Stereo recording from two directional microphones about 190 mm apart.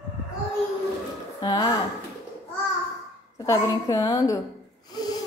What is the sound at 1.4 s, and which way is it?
Speech, 20° left (ahead or behind).